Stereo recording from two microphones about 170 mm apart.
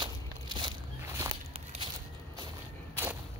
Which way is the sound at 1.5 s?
40° right (ahead or behind).